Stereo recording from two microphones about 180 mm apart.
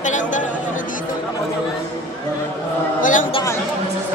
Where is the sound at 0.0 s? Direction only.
45° left (ahead or behind).